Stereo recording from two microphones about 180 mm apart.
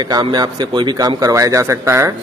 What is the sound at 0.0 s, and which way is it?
A man's voice, 20° right (ahead or behind).